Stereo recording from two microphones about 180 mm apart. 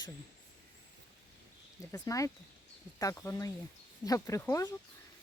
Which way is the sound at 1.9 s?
20° left (ahead or behind).